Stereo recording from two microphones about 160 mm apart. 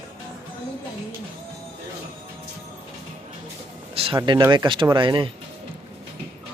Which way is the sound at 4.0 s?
35° right (ahead or behind).